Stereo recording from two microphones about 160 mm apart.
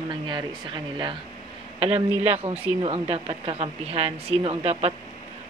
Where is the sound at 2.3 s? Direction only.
40° right (ahead or behind).